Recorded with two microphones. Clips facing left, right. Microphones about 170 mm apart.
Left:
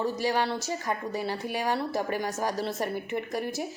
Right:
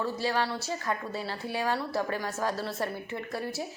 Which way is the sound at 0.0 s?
15° left (ahead or behind).